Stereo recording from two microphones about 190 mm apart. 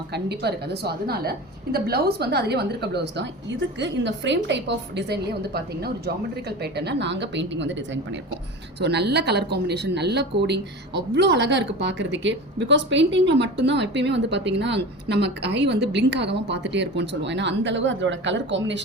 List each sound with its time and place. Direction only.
0.1 s a woman's voice: 60° right (ahead or behind)
8.8 s a woman's voice: 60° right (ahead or behind)